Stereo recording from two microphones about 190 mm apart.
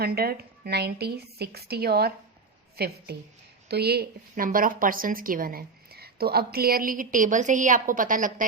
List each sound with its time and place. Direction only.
0.0 s a woman's voice: 55° right (ahead or behind)